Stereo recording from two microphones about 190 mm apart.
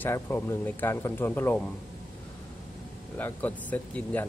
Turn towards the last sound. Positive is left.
turn(degrees=10)  # may be behind; listen again after turning